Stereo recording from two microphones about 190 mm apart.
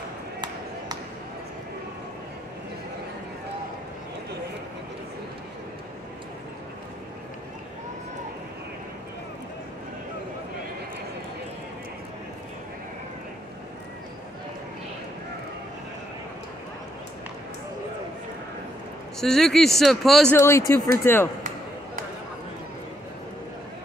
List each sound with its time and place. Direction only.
19.1 s speech: centre (ahead or behind)
20.3 s speech: 15° left (ahead or behind)
21.4 s a sound: 40° right (ahead or behind)